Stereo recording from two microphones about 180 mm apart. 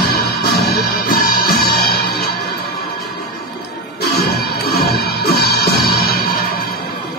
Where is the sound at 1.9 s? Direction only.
60° left (ahead or behind).